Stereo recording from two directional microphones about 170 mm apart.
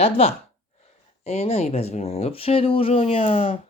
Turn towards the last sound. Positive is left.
turn(degrees=35)  # may be behind; listen again after turning